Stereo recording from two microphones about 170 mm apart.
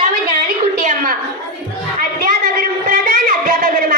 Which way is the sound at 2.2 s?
55° right (ahead or behind).